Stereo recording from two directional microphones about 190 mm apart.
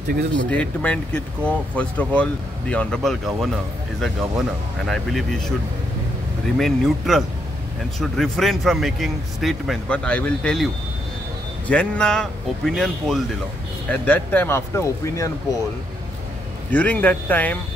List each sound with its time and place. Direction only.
0.1 s speech: 65° right (ahead or behind)
0.5 s speech: 5° left (ahead or behind)
4.8 s speech: centre (ahead or behind)
6.6 s speech: centre (ahead or behind)
16.7 s speech: 10° left (ahead or behind)